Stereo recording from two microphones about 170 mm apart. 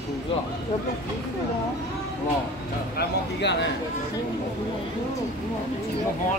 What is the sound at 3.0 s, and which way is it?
Speech, 85° left.